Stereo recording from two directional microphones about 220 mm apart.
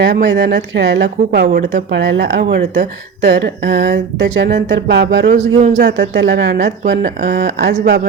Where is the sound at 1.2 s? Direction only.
40° right (ahead or behind).